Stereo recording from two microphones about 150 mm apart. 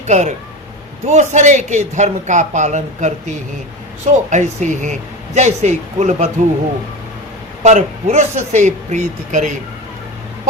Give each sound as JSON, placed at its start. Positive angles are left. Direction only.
{"t": 0.1, "sound": "speech", "side_deg": -50}
{"t": 7.6, "sound": "speech", "side_deg": -50}